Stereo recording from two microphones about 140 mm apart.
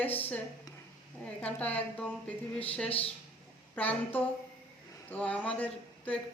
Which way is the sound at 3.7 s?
10° left (ahead or behind).